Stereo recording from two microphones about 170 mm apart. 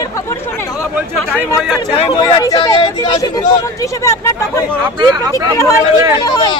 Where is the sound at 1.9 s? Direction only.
35° left (ahead or behind); by 4.7 s 15° left (ahead or behind).